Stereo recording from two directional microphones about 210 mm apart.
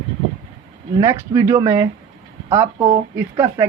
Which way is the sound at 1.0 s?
15° right (ahead or behind).